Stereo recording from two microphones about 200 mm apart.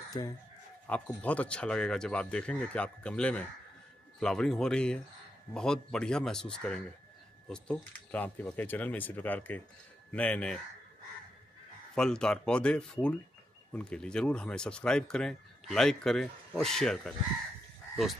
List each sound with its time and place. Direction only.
0.2 s speech: 20° left (ahead or behind)
0.8 s speech: 5° left (ahead or behind)
11.9 s speech: 5° left (ahead or behind)